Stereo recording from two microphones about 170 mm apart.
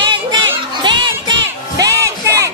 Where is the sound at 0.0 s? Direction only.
25° right (ahead or behind).